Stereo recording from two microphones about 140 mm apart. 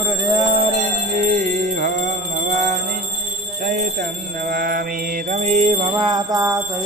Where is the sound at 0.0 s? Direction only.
30° right (ahead or behind).